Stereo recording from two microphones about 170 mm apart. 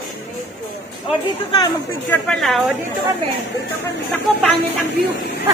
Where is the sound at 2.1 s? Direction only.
5° left (ahead or behind).